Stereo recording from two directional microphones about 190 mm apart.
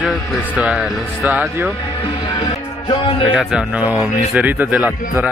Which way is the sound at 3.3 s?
5° right (ahead or behind).